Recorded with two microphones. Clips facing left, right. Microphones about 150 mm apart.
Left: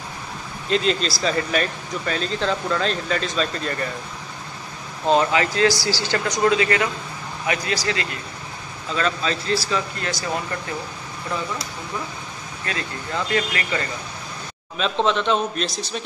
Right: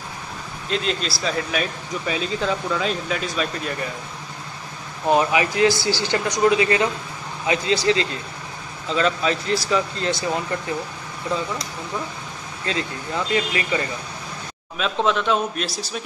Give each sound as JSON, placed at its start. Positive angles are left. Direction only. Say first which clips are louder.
{"t": 0.7, "sound": "speech", "louder": "left 4 dB", "side_deg": 0}
{"t": 5.0, "sound": "speech", "louder": "even", "side_deg": -15}
{"t": 12.6, "sound": "speech", "louder": "right 3 dB", "side_deg": -20}